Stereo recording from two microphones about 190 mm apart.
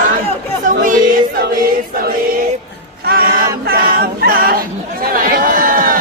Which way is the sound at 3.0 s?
50° right (ahead or behind).